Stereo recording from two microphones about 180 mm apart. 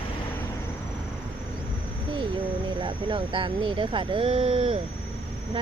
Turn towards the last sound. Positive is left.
turn(degrees=-25)  # may be behind; listen again after turning